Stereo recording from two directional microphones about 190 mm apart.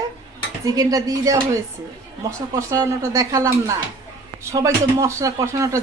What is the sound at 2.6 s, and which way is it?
Speech, 15° right (ahead or behind).